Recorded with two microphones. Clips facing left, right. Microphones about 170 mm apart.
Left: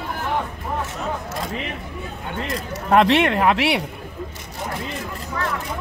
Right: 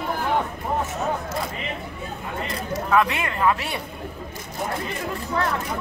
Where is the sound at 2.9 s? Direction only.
75° left (ahead or behind).